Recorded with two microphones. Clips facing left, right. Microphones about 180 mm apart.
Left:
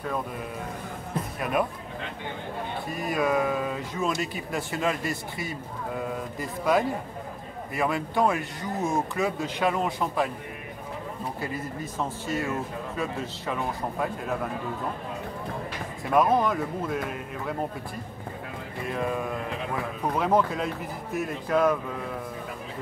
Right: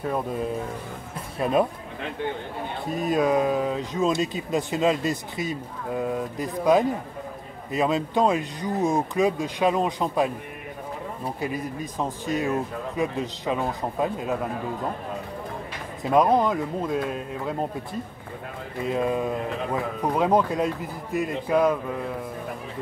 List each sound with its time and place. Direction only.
1.4 s speech: 25° right (ahead or behind)
2.9 s speech: 20° right (ahead or behind)
11.4 s speech: 15° right (ahead or behind)
16.0 s speech: 20° right (ahead or behind)
18.8 s speech: 20° right (ahead or behind)